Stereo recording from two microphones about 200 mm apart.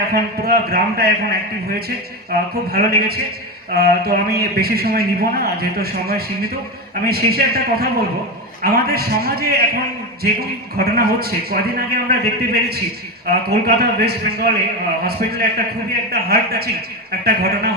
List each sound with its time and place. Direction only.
0.0 s a man's voice: 50° right (ahead or behind)